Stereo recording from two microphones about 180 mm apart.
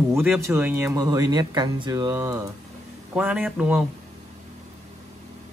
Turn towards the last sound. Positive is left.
turn(degrees=-5)  # may be behind; listen again after turning